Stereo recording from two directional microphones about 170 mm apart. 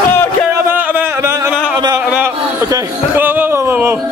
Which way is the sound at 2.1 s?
15° right (ahead or behind).